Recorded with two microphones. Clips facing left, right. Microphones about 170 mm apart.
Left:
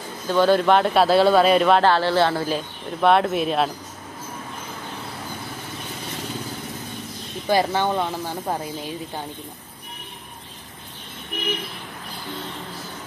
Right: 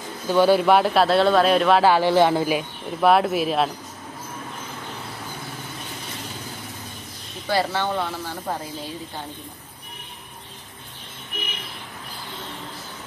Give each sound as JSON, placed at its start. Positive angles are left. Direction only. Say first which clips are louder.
{"t": 0.3, "sound": "speech", "louder": "right 1 dB", "side_deg": -10}
{"t": 7.4, "sound": "speech", "louder": "left 3 dB", "side_deg": 15}